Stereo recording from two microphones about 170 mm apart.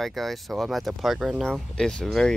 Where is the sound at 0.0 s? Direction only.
Centre (ahead or behind).